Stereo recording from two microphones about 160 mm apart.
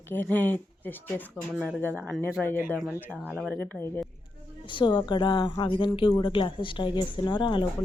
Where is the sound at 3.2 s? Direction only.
Centre (ahead or behind).